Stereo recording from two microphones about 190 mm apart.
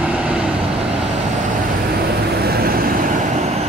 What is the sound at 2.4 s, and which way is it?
Vehicle, 55° right (ahead or behind).